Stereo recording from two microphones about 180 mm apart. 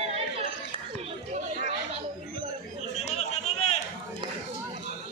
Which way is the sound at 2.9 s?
40° left (ahead or behind).